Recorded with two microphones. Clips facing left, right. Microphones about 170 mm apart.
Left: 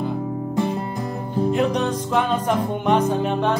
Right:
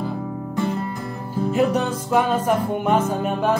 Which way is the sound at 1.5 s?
5° right (ahead or behind).